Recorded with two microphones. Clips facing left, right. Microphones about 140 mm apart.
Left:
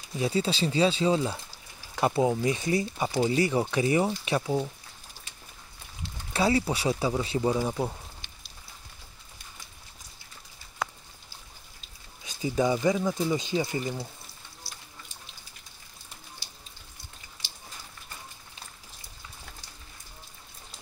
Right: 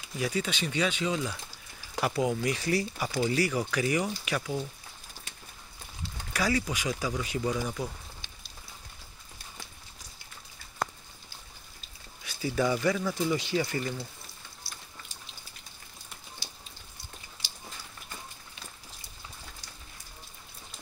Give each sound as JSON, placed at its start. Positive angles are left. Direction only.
{"t": 0.2, "sound": "speech", "side_deg": 30}
{"t": 6.3, "sound": "speech", "side_deg": 30}
{"t": 12.2, "sound": "speech", "side_deg": 20}